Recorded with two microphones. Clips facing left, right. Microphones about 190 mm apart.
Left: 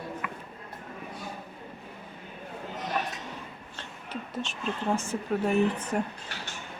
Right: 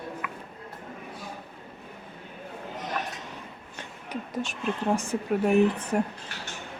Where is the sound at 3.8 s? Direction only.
15° right (ahead or behind).